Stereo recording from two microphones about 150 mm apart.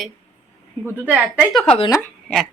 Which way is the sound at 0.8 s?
10° right (ahead or behind).